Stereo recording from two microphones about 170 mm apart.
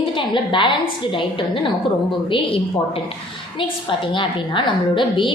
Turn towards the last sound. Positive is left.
turn(degrees=30)  # may be behind; listen again after turning